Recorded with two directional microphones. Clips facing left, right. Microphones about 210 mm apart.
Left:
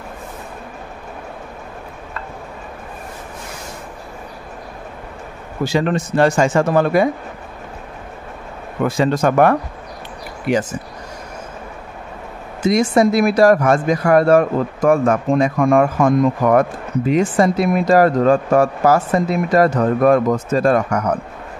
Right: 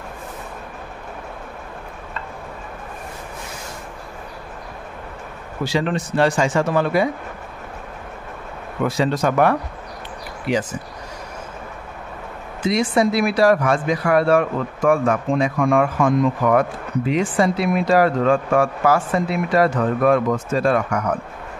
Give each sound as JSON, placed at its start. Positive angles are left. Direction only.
{"t": 5.7, "sound": "speech", "side_deg": 45}
{"t": 8.8, "sound": "speech", "side_deg": 50}
{"t": 12.6, "sound": "speech", "side_deg": 45}